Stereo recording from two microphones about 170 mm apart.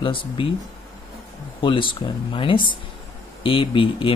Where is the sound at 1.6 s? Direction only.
30° left (ahead or behind).